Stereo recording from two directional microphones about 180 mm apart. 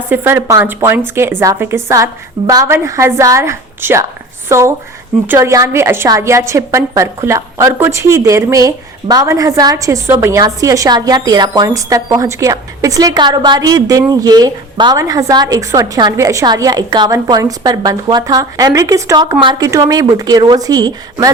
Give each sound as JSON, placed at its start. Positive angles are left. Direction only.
{"t": 0.1, "sound": "a woman's voice", "side_deg": -15}